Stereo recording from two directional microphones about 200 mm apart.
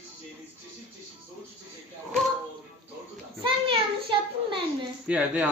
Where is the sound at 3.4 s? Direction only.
25° right (ahead or behind).